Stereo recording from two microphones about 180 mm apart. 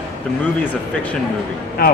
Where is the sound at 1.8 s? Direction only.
55° left (ahead or behind).